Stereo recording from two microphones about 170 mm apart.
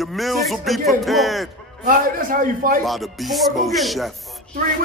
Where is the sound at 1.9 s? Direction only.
55° right (ahead or behind).